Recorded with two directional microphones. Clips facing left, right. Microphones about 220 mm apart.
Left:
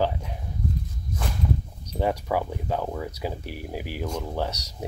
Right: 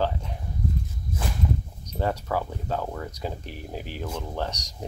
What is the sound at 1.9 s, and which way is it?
Speech, 10° left (ahead or behind).